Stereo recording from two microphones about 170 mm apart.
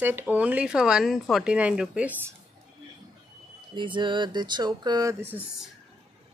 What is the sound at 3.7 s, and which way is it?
Speech, 30° right (ahead or behind).